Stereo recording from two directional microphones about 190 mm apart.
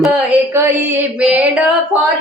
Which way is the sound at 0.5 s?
15° right (ahead or behind).